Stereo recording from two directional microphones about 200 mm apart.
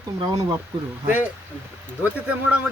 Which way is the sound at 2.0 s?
10° right (ahead or behind).